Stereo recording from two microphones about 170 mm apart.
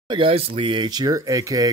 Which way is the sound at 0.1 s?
35° right (ahead or behind).